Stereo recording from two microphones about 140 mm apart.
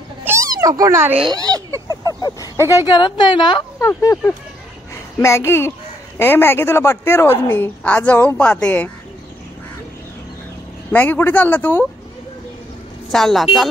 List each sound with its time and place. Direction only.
0.2 s a sound: 15° right (ahead or behind)
0.6 s a child's voice: 25° right (ahead or behind)
1.3 s a sound: 25° right (ahead or behind)
1.9 s a sound: 25° left (ahead or behind)
2.9 s a woman's voice: 35° left (ahead or behind)
3.8 s a child's voice: 20° left (ahead or behind)
5.2 s a child's voice: 20° left (ahead or behind)
10.9 s a woman's voice: 15° left (ahead or behind)
13.1 s a woman's voice: centre (ahead or behind)